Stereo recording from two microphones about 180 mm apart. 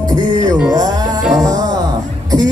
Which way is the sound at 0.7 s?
20° right (ahead or behind).